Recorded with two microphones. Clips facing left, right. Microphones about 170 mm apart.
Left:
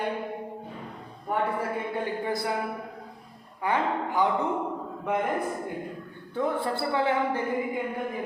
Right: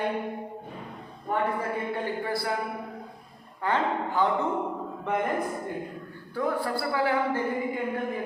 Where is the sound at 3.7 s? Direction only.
15° left (ahead or behind).